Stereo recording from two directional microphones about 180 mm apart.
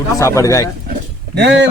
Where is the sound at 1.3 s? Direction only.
75° right (ahead or behind).